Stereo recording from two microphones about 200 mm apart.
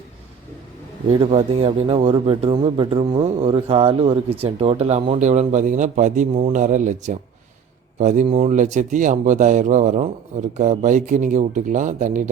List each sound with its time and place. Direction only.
1.1 s speech: 30° right (ahead or behind)